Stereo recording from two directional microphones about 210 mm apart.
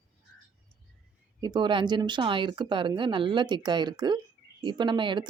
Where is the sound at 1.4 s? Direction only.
20° right (ahead or behind).